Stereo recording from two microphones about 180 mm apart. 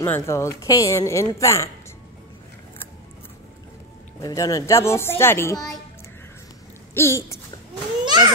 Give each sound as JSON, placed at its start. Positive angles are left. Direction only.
{"t": 0.0, "sound": "speech", "side_deg": 15}
{"t": 4.2, "sound": "speech", "side_deg": 20}
{"t": 6.9, "sound": "speech", "side_deg": 15}
{"t": 8.0, "sound": "children playing", "side_deg": -25}